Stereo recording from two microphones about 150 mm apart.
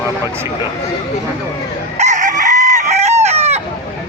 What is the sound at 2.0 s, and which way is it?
Chicken, 55° right (ahead or behind).